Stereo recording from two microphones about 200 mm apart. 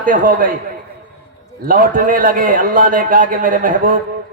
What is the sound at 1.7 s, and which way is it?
A man's voice, 45° right (ahead or behind).